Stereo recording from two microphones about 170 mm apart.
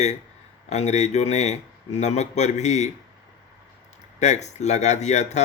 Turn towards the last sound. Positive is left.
turn(degrees=40)  # may be behind; listen again after turning